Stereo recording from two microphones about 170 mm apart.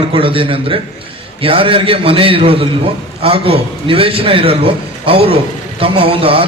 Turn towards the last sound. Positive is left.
turn(degrees=-30)  # may be behind; listen again after turning